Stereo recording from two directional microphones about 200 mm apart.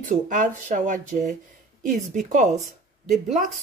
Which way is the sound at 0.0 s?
40° right (ahead or behind).